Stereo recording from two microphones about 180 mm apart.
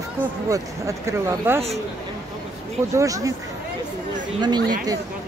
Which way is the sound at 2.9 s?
20° right (ahead or behind).